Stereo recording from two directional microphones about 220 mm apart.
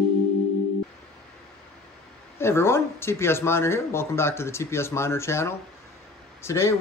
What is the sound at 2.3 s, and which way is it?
Speech, 10° left (ahead or behind).